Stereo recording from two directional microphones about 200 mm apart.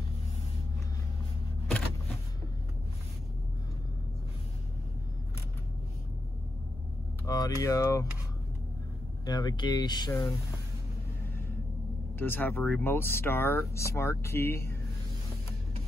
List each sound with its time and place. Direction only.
7.2 s speech: 20° left (ahead or behind)
9.2 s speech: 20° left (ahead or behind)
12.2 s speech: 10° left (ahead or behind)